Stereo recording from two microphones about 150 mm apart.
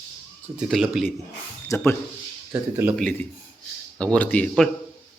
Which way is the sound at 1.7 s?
15° left (ahead or behind).